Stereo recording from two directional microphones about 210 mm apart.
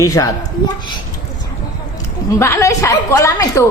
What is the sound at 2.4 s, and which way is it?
A man's voice, 15° left (ahead or behind).